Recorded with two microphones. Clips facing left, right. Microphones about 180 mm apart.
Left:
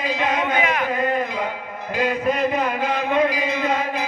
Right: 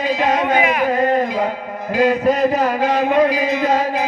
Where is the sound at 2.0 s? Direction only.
40° right (ahead or behind).